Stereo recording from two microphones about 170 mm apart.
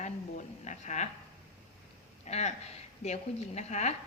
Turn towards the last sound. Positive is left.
turn(degrees=40)  # may be behind; listen again after turning